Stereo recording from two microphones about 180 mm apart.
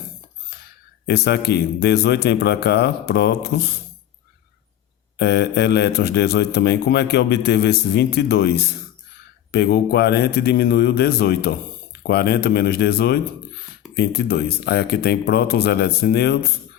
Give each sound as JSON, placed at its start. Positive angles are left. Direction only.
{"t": 1.0, "sound": "a man's voice", "side_deg": 65}
{"t": 5.1, "sound": "a man's voice", "side_deg": 65}